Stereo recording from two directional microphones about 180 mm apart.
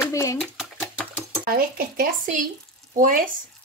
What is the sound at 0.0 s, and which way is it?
Speech, 15° left (ahead or behind).